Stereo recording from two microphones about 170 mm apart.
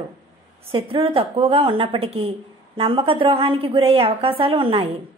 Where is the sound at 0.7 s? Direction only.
30° right (ahead or behind).